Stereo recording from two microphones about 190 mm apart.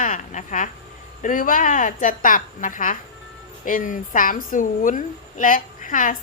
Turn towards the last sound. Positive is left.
turn(degrees=45)  # may be behind; listen again after turning